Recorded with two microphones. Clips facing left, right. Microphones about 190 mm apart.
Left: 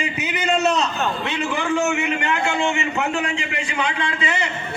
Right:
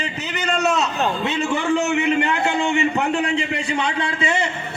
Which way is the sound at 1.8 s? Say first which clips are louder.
Right 3 dB; 35° right (ahead or behind).